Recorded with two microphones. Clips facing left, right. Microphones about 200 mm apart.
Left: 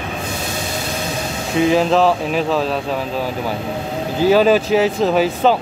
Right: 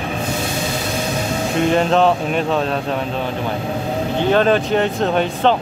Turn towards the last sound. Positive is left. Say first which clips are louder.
# left 2 dB
turn(degrees=5)  # may be behind; listen again after turning